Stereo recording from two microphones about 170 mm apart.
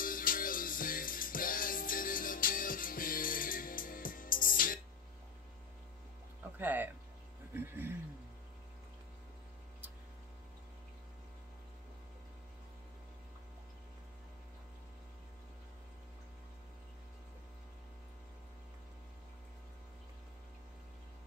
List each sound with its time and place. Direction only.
0.0 s music: 55° left (ahead or behind)
6.6 s music: 10° right (ahead or behind)
7.5 s a sound: 15° right (ahead or behind)